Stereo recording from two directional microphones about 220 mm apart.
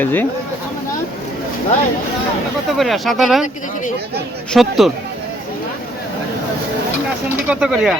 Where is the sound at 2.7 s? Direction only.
Centre (ahead or behind).